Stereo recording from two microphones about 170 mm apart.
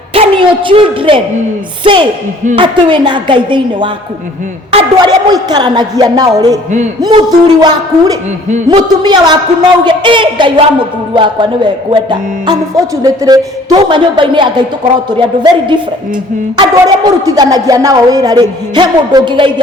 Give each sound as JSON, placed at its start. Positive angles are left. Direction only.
{"t": 0.1, "sound": "a man's voice", "side_deg": -30}